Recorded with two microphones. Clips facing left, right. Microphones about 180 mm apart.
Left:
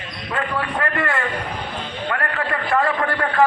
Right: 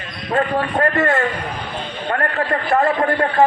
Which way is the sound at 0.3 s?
40° right (ahead or behind).